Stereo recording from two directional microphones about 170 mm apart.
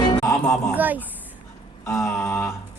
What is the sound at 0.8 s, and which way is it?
Speech, 10° right (ahead or behind).